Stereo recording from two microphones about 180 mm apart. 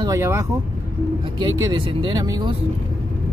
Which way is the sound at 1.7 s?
25° right (ahead or behind).